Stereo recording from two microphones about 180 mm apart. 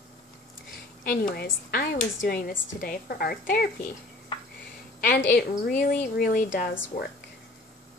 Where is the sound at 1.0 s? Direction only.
55° left (ahead or behind).